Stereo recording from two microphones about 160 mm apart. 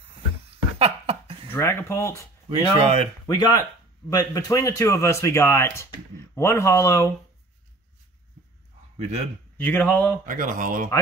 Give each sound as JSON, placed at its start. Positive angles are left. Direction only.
{"t": 0.7, "sound": "a sound", "side_deg": -35}
{"t": 1.5, "sound": "speech", "side_deg": 15}
{"t": 2.8, "sound": "speech", "side_deg": -35}
{"t": 3.3, "sound": "speech", "side_deg": 20}
{"t": 9.6, "sound": "speech", "side_deg": 10}
{"t": 10.2, "sound": "speech", "side_deg": -55}